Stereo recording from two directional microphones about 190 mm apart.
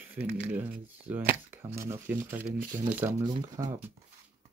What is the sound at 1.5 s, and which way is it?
Speech, 10° right (ahead or behind).